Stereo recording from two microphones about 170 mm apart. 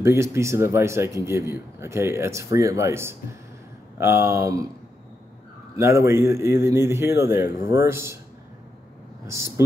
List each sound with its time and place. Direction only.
0.0 s speech: 15° right (ahead or behind)
5.8 s speech: 15° right (ahead or behind)